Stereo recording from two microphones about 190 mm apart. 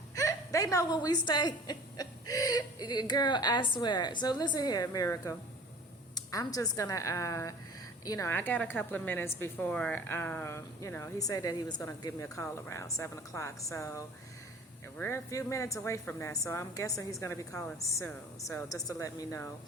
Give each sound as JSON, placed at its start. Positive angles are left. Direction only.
{"t": 0.2, "sound": "a woman's voice", "side_deg": 15}